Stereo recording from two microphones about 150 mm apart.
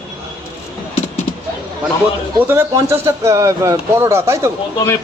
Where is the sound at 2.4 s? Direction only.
15° right (ahead or behind).